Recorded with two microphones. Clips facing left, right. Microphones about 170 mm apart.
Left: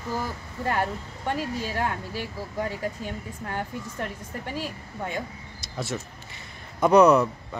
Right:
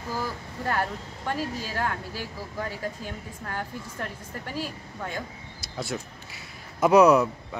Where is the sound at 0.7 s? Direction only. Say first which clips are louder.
Left 2 dB; 10° left (ahead or behind).